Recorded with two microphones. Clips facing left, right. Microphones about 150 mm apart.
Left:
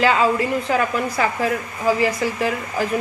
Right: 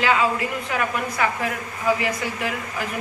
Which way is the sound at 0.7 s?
35° left (ahead or behind).